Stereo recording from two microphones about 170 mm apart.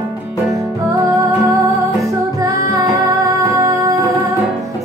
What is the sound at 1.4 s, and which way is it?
Music, 20° right (ahead or behind).